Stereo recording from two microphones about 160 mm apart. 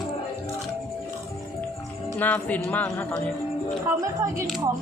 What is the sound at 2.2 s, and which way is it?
Speech, 10° left (ahead or behind).